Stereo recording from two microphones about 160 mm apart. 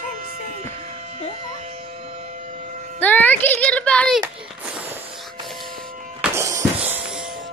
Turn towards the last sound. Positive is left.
turn(degrees=-5)  # may be behind; listen again after turning